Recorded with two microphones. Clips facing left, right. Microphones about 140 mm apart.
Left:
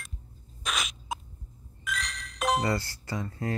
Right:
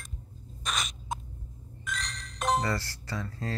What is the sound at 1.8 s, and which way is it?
Music, 5° left (ahead or behind).